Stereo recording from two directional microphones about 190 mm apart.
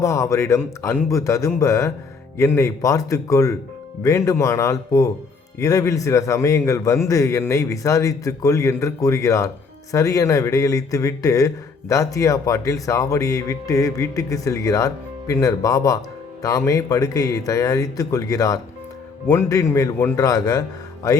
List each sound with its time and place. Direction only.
0.0 s a man's voice: 15° left (ahead or behind)